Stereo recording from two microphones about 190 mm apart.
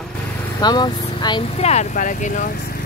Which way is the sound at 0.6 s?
20° left (ahead or behind).